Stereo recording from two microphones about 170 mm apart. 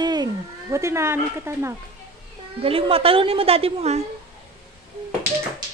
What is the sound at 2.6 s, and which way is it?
A woman's voice, 35° right (ahead or behind).